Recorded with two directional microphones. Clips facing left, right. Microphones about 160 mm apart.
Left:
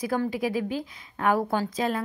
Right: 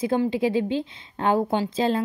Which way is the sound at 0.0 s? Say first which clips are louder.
Right 4 dB; 25° right (ahead or behind).